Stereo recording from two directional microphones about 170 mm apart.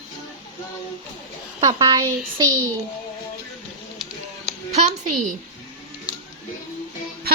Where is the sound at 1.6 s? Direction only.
25° right (ahead or behind).